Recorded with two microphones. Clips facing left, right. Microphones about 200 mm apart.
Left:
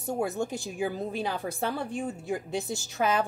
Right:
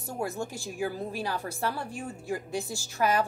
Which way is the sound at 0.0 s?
20° left (ahead or behind).